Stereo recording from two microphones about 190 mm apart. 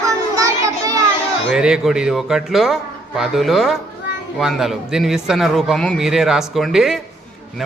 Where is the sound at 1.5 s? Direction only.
5° right (ahead or behind).